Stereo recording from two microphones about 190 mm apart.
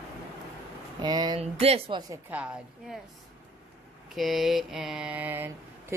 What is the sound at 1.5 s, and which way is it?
Speech, 30° right (ahead or behind).